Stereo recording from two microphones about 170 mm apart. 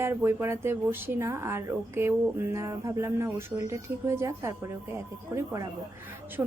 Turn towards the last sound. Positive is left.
turn(degrees=-20)  # may be behind; listen again after turning